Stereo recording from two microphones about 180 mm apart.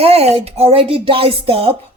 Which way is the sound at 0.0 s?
35° right (ahead or behind).